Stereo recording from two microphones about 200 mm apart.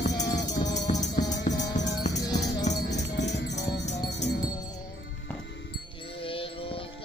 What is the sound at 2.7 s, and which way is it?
Music, 60° left (ahead or behind).